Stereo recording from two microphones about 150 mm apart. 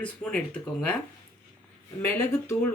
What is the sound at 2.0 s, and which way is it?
Speech, 15° left (ahead or behind).